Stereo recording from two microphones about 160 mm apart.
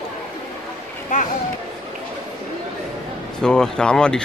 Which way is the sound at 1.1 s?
50° left (ahead or behind).